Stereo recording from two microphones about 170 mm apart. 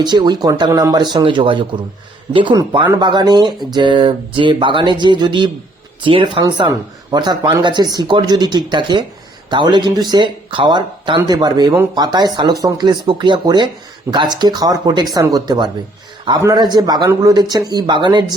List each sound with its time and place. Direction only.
0.0 s speech: 25° right (ahead or behind)